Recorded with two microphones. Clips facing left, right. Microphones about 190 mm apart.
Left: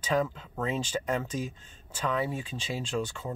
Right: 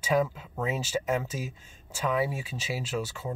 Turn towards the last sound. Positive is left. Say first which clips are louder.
# even
turn(degrees=-5)  # may be behind; listen again after turning